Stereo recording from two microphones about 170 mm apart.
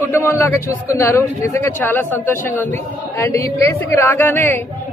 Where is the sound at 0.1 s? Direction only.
15° left (ahead or behind).